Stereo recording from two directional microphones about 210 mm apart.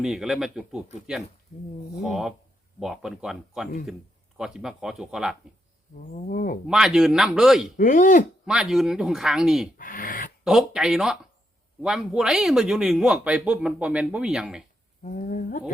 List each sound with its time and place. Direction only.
0.0 s speech: centre (ahead or behind)
2.0 s speech: centre (ahead or behind)
6.1 s speech: 45° left (ahead or behind)
6.7 s speech: 5° right (ahead or behind)
7.8 s speech: 40° left (ahead or behind)
8.4 s speech: centre (ahead or behind)
9.7 s speech: 40° left (ahead or behind)
10.4 s speech: centre (ahead or behind)
15.0 s speech: 40° left (ahead or behind)